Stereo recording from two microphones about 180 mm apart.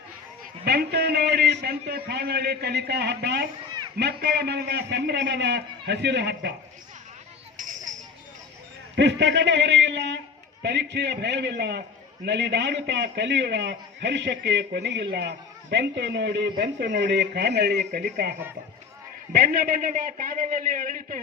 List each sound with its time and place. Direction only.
0.6 s a man's voice: 65° right (ahead or behind)
7.5 s children playing: 45° right (ahead or behind)
9.0 s a man's voice: 75° right (ahead or behind); by 21.2 s 50° right (ahead or behind)